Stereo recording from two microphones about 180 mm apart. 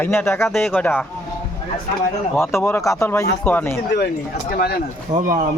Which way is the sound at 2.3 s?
15° left (ahead or behind).